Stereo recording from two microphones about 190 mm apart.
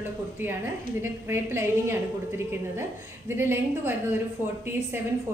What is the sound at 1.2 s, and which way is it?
Speech, 10° right (ahead or behind).